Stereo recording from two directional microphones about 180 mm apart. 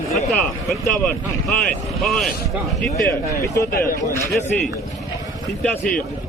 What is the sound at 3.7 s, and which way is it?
Speech, 55° left (ahead or behind).